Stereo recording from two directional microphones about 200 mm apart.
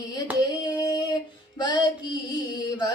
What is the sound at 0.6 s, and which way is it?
Female singing, 20° left (ahead or behind).